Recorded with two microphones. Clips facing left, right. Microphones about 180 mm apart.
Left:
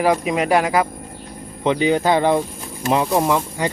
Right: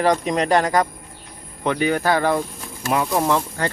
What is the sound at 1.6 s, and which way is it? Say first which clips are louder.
Speech: left 3 dB; 20° left (ahead or behind).